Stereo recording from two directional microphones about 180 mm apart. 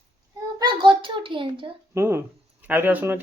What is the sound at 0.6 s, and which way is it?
A child's voice, 25° right (ahead or behind).